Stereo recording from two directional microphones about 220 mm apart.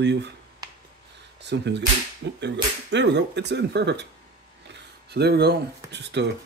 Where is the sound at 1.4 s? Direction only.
50° right (ahead or behind).